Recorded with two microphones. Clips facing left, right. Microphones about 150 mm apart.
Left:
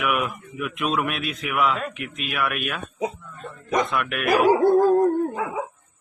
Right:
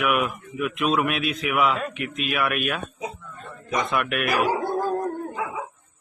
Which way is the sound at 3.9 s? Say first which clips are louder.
Right 1 dB; centre (ahead or behind).